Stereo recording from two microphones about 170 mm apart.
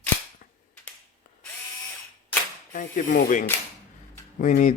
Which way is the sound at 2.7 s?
50° left (ahead or behind).